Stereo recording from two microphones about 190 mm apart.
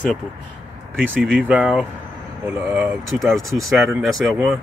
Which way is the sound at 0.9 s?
10° right (ahead or behind).